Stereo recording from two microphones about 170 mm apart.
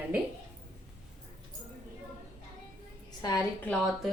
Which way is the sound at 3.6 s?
Centre (ahead or behind).